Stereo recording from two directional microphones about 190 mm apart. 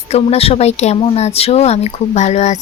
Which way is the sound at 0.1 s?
30° left (ahead or behind).